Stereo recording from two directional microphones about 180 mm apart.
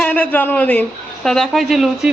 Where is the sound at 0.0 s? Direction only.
10° left (ahead or behind).